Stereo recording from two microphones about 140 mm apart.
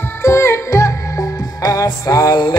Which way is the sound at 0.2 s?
20° left (ahead or behind).